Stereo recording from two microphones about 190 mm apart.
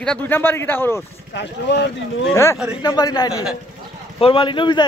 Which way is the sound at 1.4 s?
65° left (ahead or behind).